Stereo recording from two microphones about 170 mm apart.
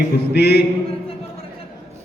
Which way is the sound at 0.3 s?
75° left (ahead or behind).